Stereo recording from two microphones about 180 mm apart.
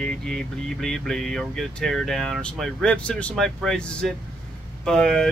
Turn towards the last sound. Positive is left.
turn(degrees=5)  # may be behind; listen again after turning